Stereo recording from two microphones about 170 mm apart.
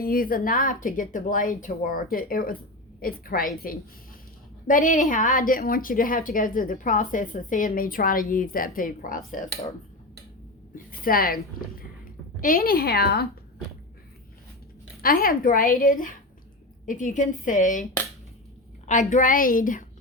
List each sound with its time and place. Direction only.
0.0 s a woman's voice: 60° left (ahead or behind)
11.0 s speech: 60° left (ahead or behind)
11.8 s a sound: 55° left (ahead or behind)
15.0 s a woman's voice: 60° left (ahead or behind)
18.9 s a woman's voice: 45° left (ahead or behind)